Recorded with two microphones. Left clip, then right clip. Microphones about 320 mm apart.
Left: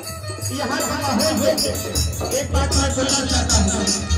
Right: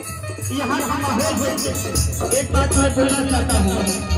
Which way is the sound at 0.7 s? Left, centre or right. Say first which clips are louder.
Right 1 dB; centre.